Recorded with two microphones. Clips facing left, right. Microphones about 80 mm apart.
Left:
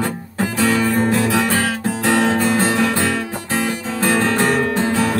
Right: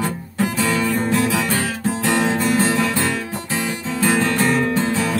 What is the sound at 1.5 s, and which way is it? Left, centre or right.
Music, left.